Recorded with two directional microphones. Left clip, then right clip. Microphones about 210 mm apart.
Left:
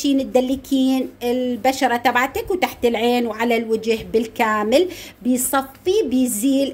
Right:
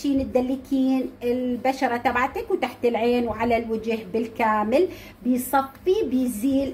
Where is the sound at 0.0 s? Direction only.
45° left (ahead or behind).